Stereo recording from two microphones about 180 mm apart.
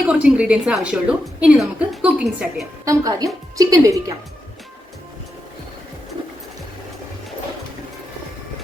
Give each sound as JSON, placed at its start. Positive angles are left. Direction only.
{"t": 0.1, "sound": "a woman's voice", "side_deg": -5}
{"t": 2.8, "sound": "a woman's voice", "side_deg": -20}